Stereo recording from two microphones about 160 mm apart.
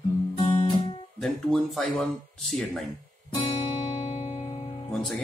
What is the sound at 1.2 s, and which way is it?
Speech, centre (ahead or behind).